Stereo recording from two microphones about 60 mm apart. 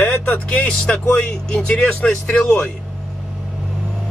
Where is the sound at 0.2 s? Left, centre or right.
Centre.